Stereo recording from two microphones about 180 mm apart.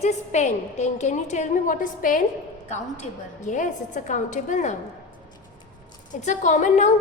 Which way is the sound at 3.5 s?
45° left (ahead or behind).